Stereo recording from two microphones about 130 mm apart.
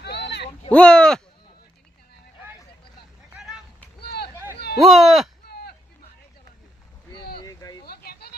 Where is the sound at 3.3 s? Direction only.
5° right (ahead or behind).